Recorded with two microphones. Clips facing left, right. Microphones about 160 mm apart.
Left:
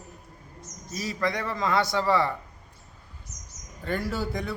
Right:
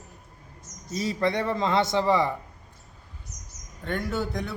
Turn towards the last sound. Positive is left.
turn(degrees=0)  # may be behind; listen again after turning